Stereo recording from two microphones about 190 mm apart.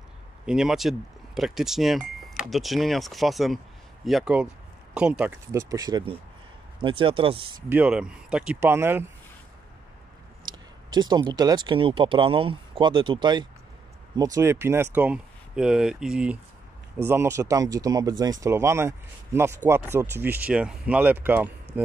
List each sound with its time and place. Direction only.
0.5 s speech: 5° right (ahead or behind); by 7.3 s 30° right (ahead or behind)
7.7 s speech: 5° right (ahead or behind)
10.4 s speech: 20° right (ahead or behind)